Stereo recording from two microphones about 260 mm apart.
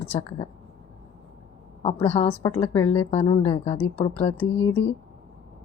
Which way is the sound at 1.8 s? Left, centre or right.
Left.